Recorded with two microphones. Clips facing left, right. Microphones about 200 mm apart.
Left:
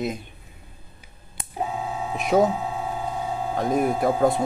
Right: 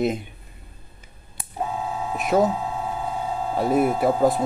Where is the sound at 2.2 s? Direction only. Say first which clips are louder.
Left 1 dB; centre (ahead or behind).